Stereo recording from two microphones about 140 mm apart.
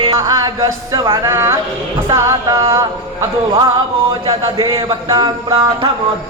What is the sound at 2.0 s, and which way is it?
Speech, 20° right (ahead or behind).